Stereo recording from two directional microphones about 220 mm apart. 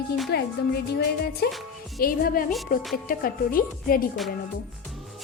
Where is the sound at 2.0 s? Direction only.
40° left (ahead or behind).